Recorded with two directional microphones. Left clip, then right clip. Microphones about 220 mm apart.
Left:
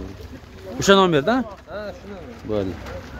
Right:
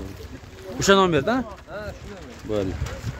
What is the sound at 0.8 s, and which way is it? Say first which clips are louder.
Speech: left 2 dB; 5° left (ahead or behind).